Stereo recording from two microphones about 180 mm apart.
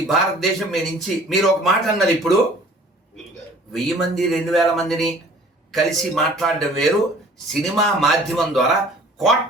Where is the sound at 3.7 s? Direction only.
Centre (ahead or behind).